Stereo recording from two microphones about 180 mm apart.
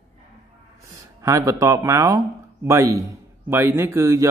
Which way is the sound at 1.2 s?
20° right (ahead or behind).